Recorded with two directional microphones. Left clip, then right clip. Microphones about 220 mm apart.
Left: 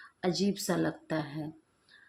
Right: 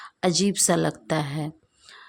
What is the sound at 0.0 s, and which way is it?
Speech, 45° right (ahead or behind).